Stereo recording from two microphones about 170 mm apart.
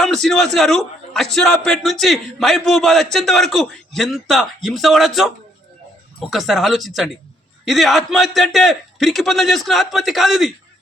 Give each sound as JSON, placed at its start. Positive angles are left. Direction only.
{"t": 0.0, "sound": "a man's voice", "side_deg": 0}